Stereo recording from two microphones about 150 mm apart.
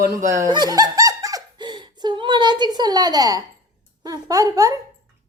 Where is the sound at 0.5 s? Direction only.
25° right (ahead or behind).